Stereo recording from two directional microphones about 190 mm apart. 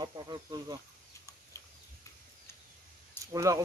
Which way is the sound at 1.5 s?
15° left (ahead or behind).